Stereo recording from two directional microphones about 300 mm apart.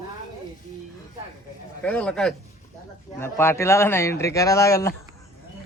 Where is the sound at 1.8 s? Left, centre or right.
Centre.